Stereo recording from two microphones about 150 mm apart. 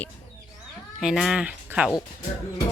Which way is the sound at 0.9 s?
Centre (ahead or behind).